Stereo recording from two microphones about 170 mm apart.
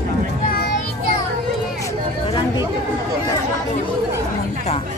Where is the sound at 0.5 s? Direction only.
60° left (ahead or behind).